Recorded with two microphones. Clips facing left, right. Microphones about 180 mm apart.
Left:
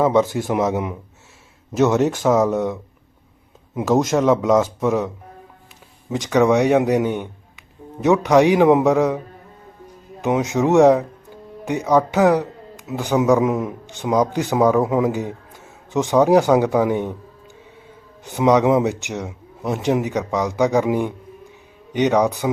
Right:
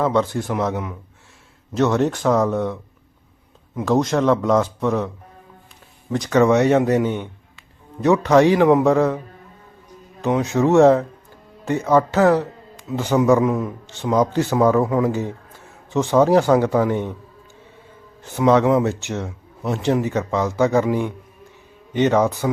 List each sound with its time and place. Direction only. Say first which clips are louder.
0.1 s a man's voice: left 3 dB; 5° left (ahead or behind)
0.4 s speech: left 3 dB; 20° left (ahead or behind)
1.7 s a man's voice: left 2 dB; 5° left (ahead or behind)
4.0 s a man's voice: left 1 dB; 5° left (ahead or behind)
6.2 s a man's voice: even; 15° left (ahead or behind)
12.1 s a man's voice: even; 15° left (ahead or behind)
14.8 s a sound: even; 15° left (ahead or behind)
16.4 s a man's voice: even; 15° left (ahead or behind)
18.2 s a man's voice: even; 15° left (ahead or behind)